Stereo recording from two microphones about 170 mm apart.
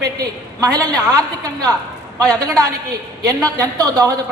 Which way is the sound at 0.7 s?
20° right (ahead or behind).